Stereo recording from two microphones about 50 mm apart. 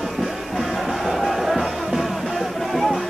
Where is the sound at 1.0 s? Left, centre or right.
Centre.